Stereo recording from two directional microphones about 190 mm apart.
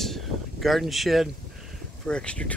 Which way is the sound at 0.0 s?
Centre (ahead or behind).